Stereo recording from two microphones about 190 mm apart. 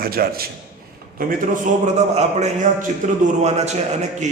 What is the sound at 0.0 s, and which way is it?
A man's voice, 50° right (ahead or behind).